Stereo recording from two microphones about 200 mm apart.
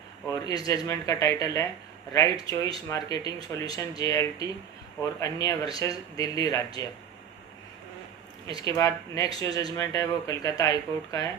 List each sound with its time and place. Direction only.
0.3 s speech: 15° left (ahead or behind)
8.4 s speech: 20° left (ahead or behind)